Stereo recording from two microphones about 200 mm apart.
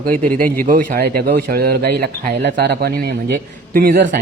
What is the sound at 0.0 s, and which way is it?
A man's voice, 45° right (ahead or behind).